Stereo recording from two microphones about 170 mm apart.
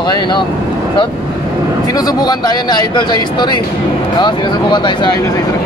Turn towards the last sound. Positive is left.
turn(degrees=25)  # may be behind; listen again after turning